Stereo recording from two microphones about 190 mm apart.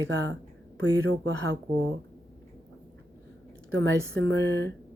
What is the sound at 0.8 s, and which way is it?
Speech, 90° right.